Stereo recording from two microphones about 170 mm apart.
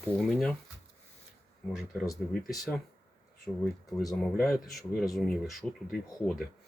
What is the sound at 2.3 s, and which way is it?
Speech, 5° left (ahead or behind).